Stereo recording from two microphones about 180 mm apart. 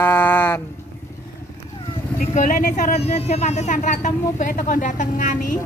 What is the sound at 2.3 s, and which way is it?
Speech, 45° left (ahead or behind).